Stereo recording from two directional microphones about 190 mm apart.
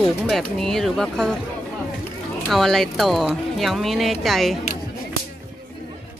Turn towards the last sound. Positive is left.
turn(degrees=0)  # may be behind; listen again after turning